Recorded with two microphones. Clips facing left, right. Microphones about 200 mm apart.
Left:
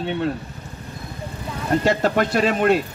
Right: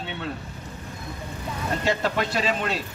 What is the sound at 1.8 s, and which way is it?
Speech, 50° left (ahead or behind).